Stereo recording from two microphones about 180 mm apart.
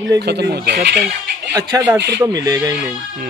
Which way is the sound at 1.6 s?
20° right (ahead or behind).